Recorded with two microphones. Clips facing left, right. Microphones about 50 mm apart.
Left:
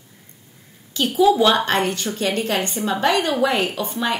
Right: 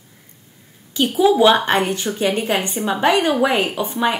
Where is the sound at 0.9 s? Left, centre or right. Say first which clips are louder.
Right 1 dB; centre.